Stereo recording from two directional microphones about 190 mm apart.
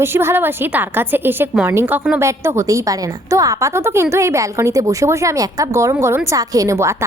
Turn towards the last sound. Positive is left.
turn(degrees=-15)  # may be behind; listen again after turning